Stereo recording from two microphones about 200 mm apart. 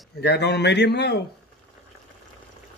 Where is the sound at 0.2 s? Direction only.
55° left (ahead or behind).